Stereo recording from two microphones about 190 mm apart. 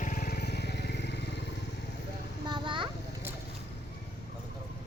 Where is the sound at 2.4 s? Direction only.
25° right (ahead or behind).